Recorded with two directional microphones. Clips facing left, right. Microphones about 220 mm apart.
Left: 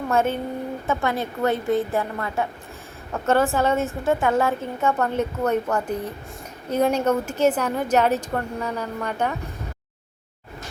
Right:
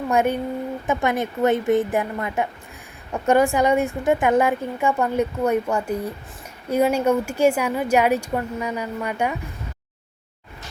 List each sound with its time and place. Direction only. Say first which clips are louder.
0.1 s a woman's voice: right 2 dB; 15° right (ahead or behind)